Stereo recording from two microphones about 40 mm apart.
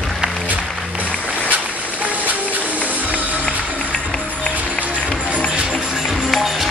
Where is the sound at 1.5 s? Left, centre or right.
Right.